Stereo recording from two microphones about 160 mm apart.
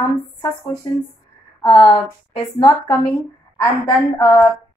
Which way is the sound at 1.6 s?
30° left (ahead or behind).